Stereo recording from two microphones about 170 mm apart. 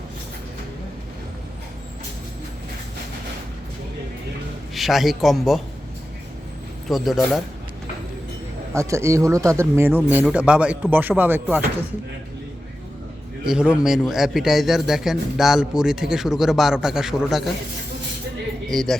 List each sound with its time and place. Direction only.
4.7 s a man's voice: centre (ahead or behind)
6.8 s a man's voice: centre (ahead or behind)
8.7 s speech: 15° right (ahead or behind)
13.4 s a man's voice: 5° right (ahead or behind)
18.7 s a man's voice: centre (ahead or behind)